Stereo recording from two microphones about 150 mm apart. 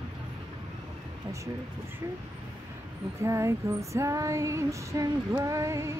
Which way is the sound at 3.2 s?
20° right (ahead or behind).